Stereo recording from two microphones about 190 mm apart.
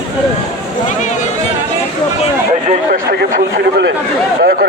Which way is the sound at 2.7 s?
50° right (ahead or behind).